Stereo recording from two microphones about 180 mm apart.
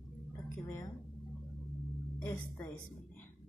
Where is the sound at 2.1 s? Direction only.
10° left (ahead or behind).